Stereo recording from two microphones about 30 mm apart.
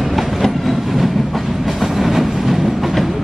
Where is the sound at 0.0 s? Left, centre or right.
Centre.